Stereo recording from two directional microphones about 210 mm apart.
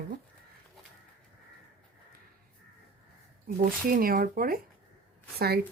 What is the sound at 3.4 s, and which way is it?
Speech, 40° right (ahead or behind).